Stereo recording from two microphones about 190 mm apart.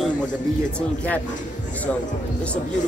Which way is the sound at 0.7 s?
10° left (ahead or behind).